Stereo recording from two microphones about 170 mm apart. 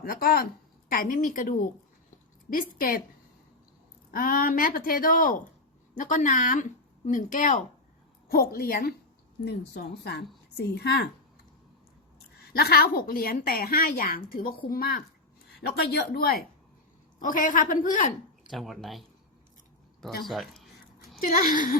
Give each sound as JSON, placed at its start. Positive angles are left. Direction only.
{"t": 0.0, "sound": "a woman's voice", "side_deg": 60}
{"t": 4.1, "sound": "a woman's voice", "side_deg": 55}
{"t": 8.3, "sound": "a woman's voice", "side_deg": 60}
{"t": 9.4, "sound": "speech", "side_deg": 75}
{"t": 12.5, "sound": "a woman's voice", "side_deg": 65}
{"t": 15.6, "sound": "speech", "side_deg": 70}
{"t": 17.2, "sound": "speech", "side_deg": 50}
{"t": 18.5, "sound": "speech", "side_deg": 0}
{"t": 20.2, "sound": "speech", "side_deg": 0}
{"t": 21.2, "sound": "speech", "side_deg": 55}